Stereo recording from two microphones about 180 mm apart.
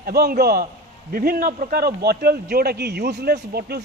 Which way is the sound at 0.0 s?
60° right (ahead or behind).